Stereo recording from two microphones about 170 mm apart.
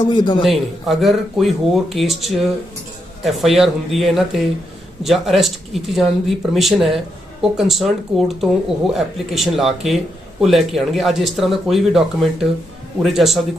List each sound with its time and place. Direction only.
0.0 s a man's voice: 25° left (ahead or behind)
0.4 s speech: centre (ahead or behind)